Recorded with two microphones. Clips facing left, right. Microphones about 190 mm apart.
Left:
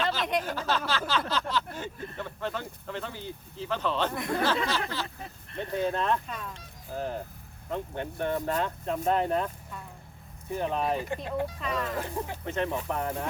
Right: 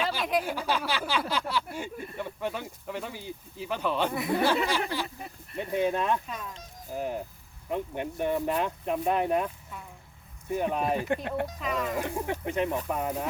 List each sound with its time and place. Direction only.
0.0 s speech: 10° right (ahead or behind)